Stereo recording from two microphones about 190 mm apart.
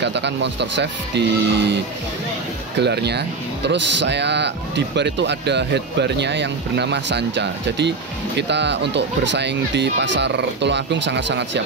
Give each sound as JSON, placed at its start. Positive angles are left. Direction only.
{"t": 0.0, "sound": "speech", "side_deg": -65}
{"t": 2.8, "sound": "speech", "side_deg": -60}